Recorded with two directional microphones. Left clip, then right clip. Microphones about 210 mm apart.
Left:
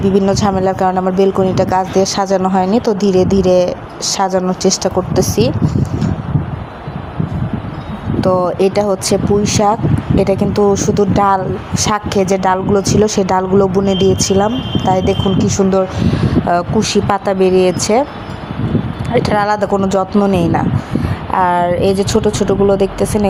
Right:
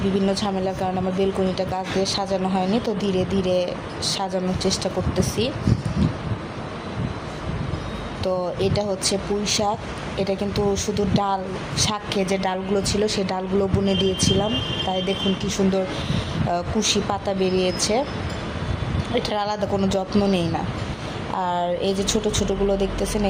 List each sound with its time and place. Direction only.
0.3 s speech: 35° left (ahead or behind)
8.2 s speech: 30° left (ahead or behind)
19.1 s speech: 30° left (ahead or behind)